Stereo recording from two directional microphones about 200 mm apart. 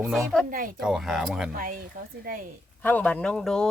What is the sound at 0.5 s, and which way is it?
Speech, 45° right (ahead or behind).